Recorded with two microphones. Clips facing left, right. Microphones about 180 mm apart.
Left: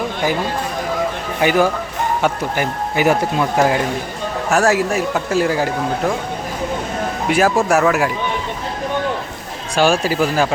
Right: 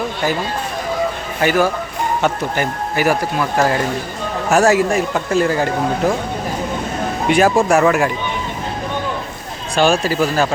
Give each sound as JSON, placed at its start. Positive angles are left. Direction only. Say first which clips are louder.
{"t": 1.4, "sound": "speech", "louder": "even", "side_deg": 15}
{"t": 4.5, "sound": "speech", "louder": "right 3 dB", "side_deg": 0}
{"t": 7.3, "sound": "speech", "louder": "right 2 dB", "side_deg": 5}
{"t": 9.7, "sound": "speech", "louder": "even", "side_deg": 10}